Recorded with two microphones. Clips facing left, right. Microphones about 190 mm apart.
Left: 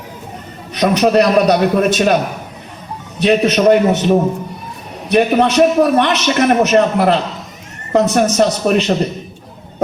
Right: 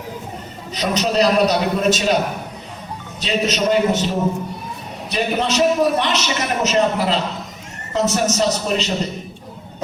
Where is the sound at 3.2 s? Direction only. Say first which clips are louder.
Left 8 dB; 60° left (ahead or behind).